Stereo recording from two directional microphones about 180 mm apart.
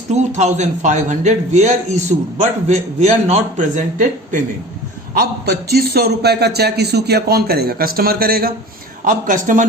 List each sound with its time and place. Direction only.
0.1 s a man's voice: 40° right (ahead or behind)
5.1 s a man's voice: 55° right (ahead or behind)